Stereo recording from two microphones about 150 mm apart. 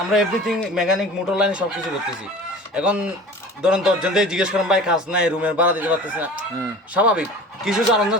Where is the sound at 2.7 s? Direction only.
5° right (ahead or behind).